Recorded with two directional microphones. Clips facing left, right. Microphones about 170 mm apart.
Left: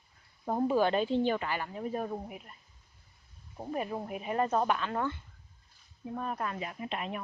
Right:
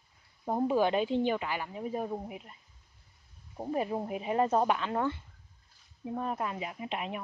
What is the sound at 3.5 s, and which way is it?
Speech, 20° right (ahead or behind).